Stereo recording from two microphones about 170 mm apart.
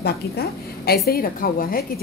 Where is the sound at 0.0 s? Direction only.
65° left (ahead or behind).